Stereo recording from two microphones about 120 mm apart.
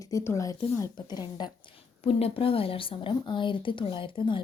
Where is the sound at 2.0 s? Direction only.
50° left (ahead or behind).